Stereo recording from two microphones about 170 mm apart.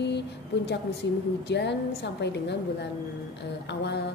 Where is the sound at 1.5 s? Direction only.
90° left.